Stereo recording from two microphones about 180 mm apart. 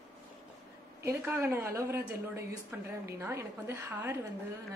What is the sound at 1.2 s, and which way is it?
A woman's voice, 15° right (ahead or behind).